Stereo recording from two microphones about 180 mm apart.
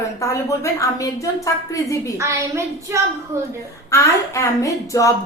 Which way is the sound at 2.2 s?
15° right (ahead or behind).